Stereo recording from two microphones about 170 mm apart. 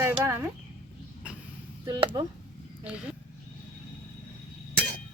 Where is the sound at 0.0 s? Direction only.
15° right (ahead or behind).